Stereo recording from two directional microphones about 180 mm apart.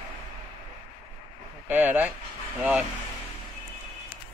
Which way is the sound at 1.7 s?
10° right (ahead or behind).